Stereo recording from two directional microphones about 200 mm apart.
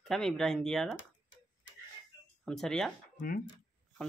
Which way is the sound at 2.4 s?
5° left (ahead or behind).